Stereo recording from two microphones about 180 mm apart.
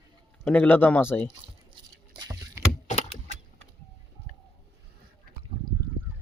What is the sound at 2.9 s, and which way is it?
Computer keyboard, 35° left (ahead or behind).